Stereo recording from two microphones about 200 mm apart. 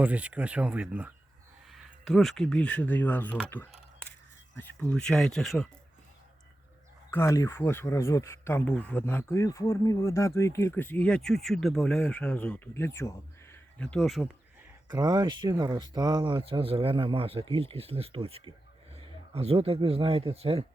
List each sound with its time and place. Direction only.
0.0 s speech: 5° right (ahead or behind)
3.5 s camera: 10° left (ahead or behind)
4.8 s speech: 5° left (ahead or behind)
7.1 s speech: 15° left (ahead or behind)
14.8 s speech: 20° right (ahead or behind)